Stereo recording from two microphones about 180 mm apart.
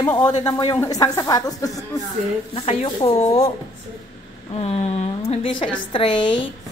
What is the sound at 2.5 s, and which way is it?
Speech, 30° left (ahead or behind).